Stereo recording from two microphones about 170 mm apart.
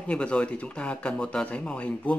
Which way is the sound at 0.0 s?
5° left (ahead or behind).